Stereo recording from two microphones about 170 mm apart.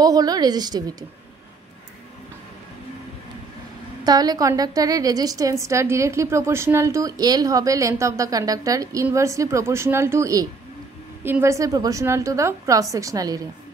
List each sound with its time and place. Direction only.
0.0 s a woman's voice: 20° right (ahead or behind)
4.0 s a woman's voice: 25° right (ahead or behind)